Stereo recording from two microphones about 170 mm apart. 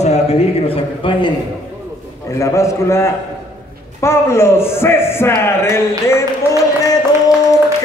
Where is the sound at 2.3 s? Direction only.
15° left (ahead or behind).